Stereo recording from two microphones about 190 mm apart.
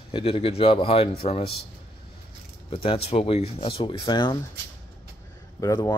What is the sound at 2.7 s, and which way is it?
A man's voice, 30° left (ahead or behind).